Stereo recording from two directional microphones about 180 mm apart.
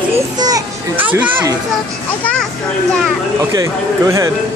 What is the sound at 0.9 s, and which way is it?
Speech, 10° right (ahead or behind).